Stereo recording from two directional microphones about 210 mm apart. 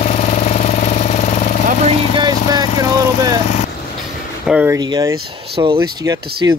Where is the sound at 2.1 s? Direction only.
20° right (ahead or behind).